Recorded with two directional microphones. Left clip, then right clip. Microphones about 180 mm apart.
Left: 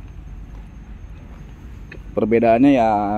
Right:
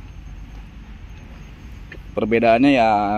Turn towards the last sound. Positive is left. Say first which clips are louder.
# even
turn(degrees=10)  # may be behind; listen again after turning